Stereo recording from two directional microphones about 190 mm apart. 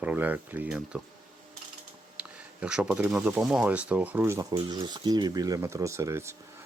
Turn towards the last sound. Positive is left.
turn(degrees=-15)  # may be behind; listen again after turning